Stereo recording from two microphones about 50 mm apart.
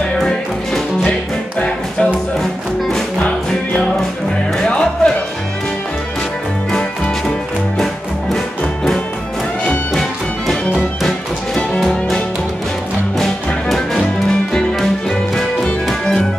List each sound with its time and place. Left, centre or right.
3.2 s music: left
6.7 s music: centre
9.9 s music: centre
13.2 s music: centre